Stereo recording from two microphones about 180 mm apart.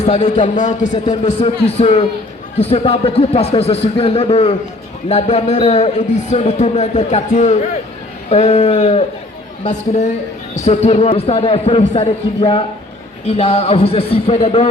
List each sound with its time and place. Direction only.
0.0 s speech: 40° left (ahead or behind)
0.4 s speech: 45° left (ahead or behind)